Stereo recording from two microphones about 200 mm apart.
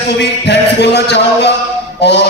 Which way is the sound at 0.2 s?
55° left (ahead or behind).